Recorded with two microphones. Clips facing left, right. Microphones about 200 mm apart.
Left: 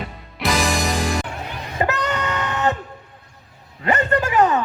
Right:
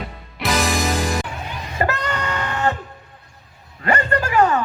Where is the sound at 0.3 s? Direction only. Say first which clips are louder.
Even; centre (ahead or behind).